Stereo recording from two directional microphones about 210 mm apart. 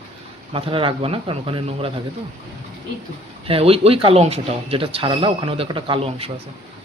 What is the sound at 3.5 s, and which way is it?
A man's voice, 25° right (ahead or behind).